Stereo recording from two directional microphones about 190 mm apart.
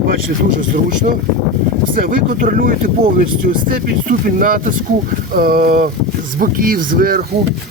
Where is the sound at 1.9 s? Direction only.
45° right (ahead or behind).